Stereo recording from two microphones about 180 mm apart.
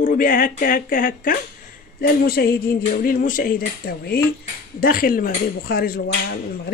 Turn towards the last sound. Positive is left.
turn(degrees=55)  # may be behind; listen again after turning